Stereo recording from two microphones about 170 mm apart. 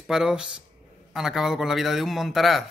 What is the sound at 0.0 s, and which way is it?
Speech, 5° right (ahead or behind).